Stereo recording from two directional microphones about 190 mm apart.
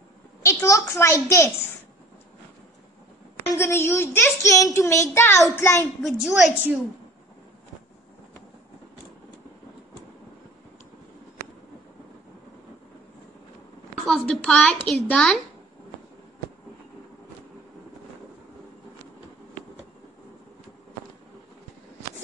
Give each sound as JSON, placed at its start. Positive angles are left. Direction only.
{"t": 0.4, "sound": "a child's voice", "side_deg": 15}
{"t": 3.5, "sound": "a child's voice", "side_deg": 15}
{"t": 6.0, "sound": "a woman's voice", "side_deg": 0}
{"t": 14.0, "sound": "speech", "side_deg": 0}